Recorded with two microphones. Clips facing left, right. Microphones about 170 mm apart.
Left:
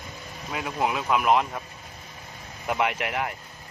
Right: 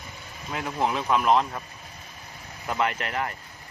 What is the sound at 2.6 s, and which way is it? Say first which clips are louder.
Speech: left 1 dB; 10° left (ahead or behind).